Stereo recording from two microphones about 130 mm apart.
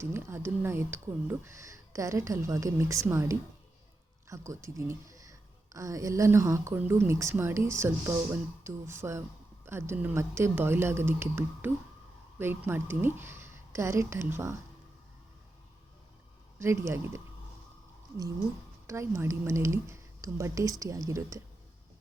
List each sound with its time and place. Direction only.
0.0 s a woman's voice: 20° right (ahead or behind)
16.6 s a woman's voice: 20° right (ahead or behind)
18.9 s a woman's voice: 20° right (ahead or behind)